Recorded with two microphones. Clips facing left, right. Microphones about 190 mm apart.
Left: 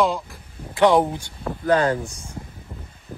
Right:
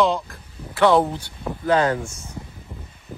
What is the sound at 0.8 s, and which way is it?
Speech, 10° left (ahead or behind).